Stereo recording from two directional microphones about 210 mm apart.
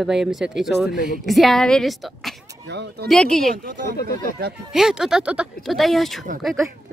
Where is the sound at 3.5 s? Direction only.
40° right (ahead or behind).